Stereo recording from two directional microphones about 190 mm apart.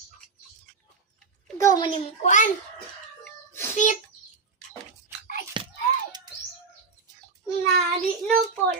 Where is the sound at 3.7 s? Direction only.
40° left (ahead or behind).